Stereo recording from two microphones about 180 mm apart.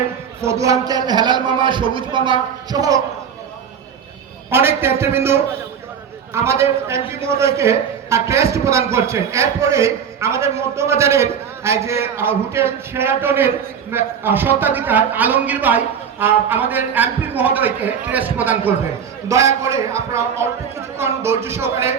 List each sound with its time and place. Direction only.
0.4 s a man's voice: 20° right (ahead or behind)
4.4 s a man's voice: 15° right (ahead or behind)